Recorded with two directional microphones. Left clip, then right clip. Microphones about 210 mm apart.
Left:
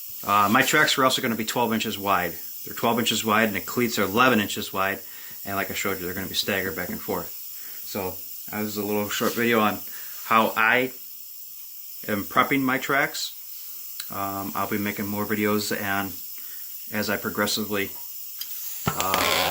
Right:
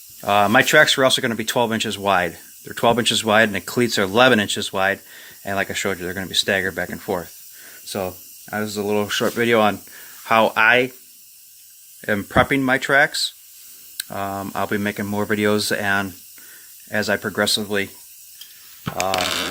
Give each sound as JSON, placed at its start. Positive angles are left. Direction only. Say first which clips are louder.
{"t": 0.2, "sound": "speech", "louder": "right 4 dB", "side_deg": -35}
{"t": 7.9, "sound": "speech", "louder": "right 5 dB", "side_deg": -50}
{"t": 12.0, "sound": "speech", "louder": "right 5 dB", "side_deg": -40}